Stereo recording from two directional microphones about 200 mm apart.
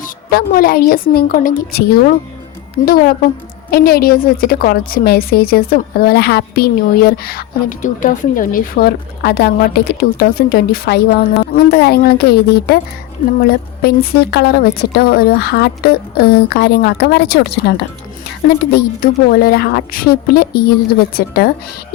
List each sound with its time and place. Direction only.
0.3 s a woman's voice: 50° left (ahead or behind)
14.2 s a woman's voice: 55° left (ahead or behind)